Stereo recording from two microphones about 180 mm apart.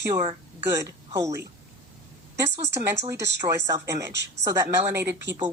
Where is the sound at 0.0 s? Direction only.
15° right (ahead or behind).